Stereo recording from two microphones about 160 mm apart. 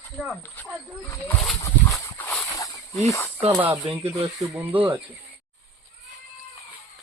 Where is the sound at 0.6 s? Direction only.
10° left (ahead or behind).